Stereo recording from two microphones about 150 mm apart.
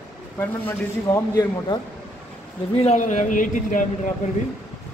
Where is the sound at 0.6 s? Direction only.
20° left (ahead or behind).